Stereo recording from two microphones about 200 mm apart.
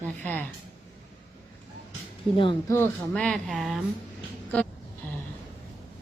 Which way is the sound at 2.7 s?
5° left (ahead or behind).